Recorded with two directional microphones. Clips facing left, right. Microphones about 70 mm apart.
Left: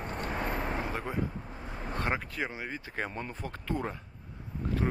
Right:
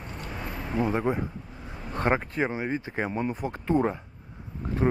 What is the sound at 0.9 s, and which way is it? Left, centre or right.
Speech, right.